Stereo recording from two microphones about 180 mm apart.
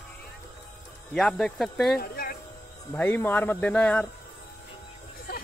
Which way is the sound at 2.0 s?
55° left (ahead or behind).